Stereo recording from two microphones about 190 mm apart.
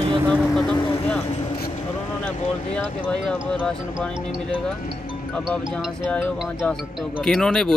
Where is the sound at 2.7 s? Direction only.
5° left (ahead or behind).